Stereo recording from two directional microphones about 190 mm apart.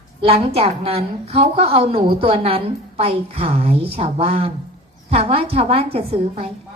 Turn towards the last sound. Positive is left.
turn(degrees=-30)  # may be behind; listen again after turning